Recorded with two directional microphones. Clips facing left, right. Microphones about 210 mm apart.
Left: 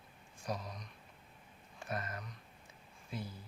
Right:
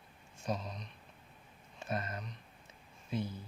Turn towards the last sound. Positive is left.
turn(degrees=-20)  # may be behind; listen again after turning